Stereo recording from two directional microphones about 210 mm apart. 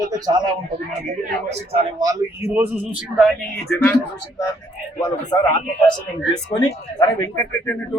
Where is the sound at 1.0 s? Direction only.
35° right (ahead or behind); by 3.0 s 10° right (ahead or behind).